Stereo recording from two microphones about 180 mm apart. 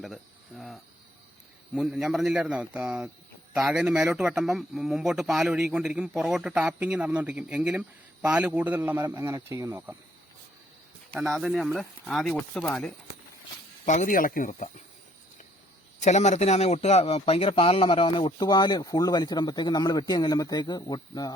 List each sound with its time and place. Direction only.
0.0 s cricket: centre (ahead or behind)
1.7 s a man's voice: 5° right (ahead or behind)
11.1 s speech: centre (ahead or behind)
13.8 s speech: 40° left (ahead or behind)
16.0 s a man's voice: 40° left (ahead or behind); by 21.3 s 20° left (ahead or behind)